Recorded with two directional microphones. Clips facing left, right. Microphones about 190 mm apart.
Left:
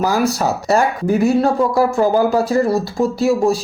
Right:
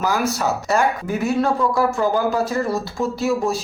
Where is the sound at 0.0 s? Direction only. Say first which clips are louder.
Left 4 dB; 35° left (ahead or behind).